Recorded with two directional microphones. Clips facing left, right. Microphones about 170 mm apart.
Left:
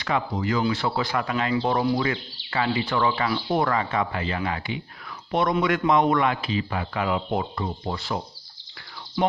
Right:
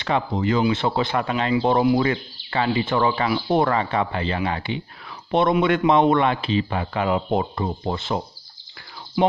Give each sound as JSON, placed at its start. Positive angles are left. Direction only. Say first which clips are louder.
{"t": 0.0, "sound": "a man's voice", "louder": "right 3 dB", "side_deg": -25}
{"t": 1.5, "sound": "speech", "louder": "right 6 dB", "side_deg": -20}
{"t": 2.0, "sound": "speech", "louder": "right 4 dB", "side_deg": -35}
{"t": 3.3, "sound": "speech", "louder": "right 3 dB", "side_deg": -15}
{"t": 3.5, "sound": "a man's voice", "louder": "right 3 dB", "side_deg": -30}